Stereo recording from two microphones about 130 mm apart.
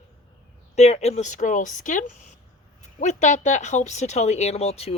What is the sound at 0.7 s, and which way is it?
Speech, 60° left (ahead or behind).